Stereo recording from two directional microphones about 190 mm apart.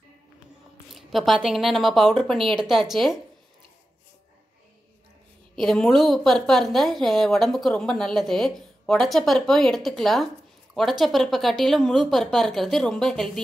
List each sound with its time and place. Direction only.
0.9 s a woman's voice: centre (ahead or behind)
5.6 s a woman's voice: centre (ahead or behind)